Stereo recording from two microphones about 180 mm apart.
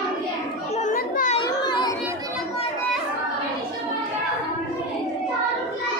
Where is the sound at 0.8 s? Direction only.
50° left (ahead or behind).